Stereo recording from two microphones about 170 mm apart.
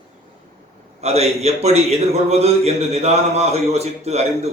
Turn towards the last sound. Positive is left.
turn(degrees=-40)  # may be behind; listen again after turning